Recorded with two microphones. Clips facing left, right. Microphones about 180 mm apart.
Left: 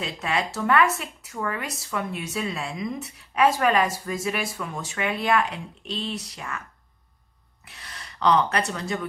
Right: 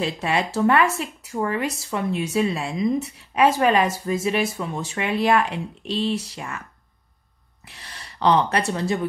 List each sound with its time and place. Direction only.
0.0 s speech: 30° right (ahead or behind)
8.2 s speech: 25° right (ahead or behind)